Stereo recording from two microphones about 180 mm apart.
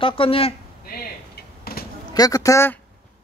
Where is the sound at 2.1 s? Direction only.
20° left (ahead or behind).